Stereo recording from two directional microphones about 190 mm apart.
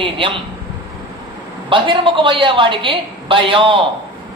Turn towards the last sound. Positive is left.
turn(degrees=-25)  # may be behind; listen again after turning